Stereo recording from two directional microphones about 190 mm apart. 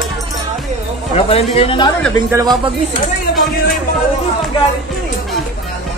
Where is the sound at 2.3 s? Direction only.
20° right (ahead or behind).